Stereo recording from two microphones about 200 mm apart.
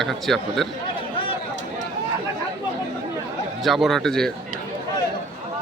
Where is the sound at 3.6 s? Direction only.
Centre (ahead or behind).